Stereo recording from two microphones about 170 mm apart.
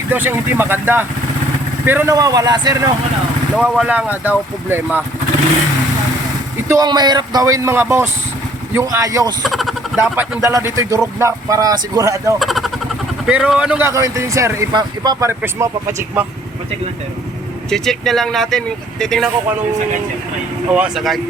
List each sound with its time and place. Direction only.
0.1 s speech: 10° right (ahead or behind)
3.5 s speech: 5° right (ahead or behind)
6.7 s speech: 25° right (ahead or behind)
9.4 s vehicle: centre (ahead or behind)
10.0 s speech: 15° right (ahead or behind)
12.4 s vehicle: centre (ahead or behind)
13.2 s speech: 5° right (ahead or behind)
17.7 s speech: centre (ahead or behind)
20.7 s speech: 5° right (ahead or behind)